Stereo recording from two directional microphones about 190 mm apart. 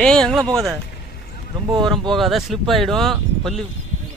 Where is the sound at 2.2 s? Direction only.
Centre (ahead or behind).